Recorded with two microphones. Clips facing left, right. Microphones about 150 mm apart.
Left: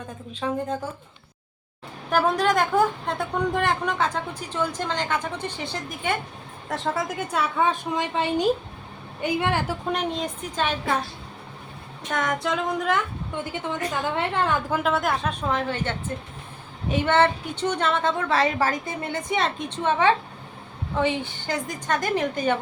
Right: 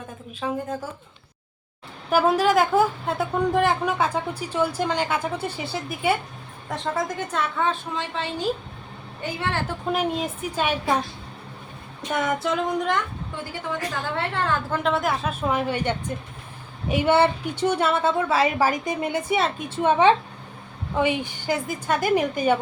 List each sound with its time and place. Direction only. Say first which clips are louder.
0.3 s a woman's voice: left 1 dB; 5° right (ahead or behind)
2.0 s a woman's voice: right 2 dB; 5° right (ahead or behind)
6.7 s a woman's voice: even; 5° left (ahead or behind)
9.9 s a woman's voice: right 5 dB; 5° right (ahead or behind)
12.1 s a woman's voice: right 1 dB; 10° right (ahead or behind)
13.3 s a woman's voice: left 1 dB; 20° left (ahead or behind)
14.8 s a woman's voice: right 2 dB; centre (ahead or behind)